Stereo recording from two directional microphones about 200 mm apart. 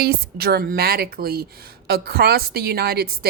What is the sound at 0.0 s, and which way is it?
A woman's voice, 50° right (ahead or behind).